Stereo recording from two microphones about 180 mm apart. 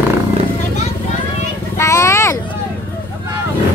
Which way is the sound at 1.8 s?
15° left (ahead or behind).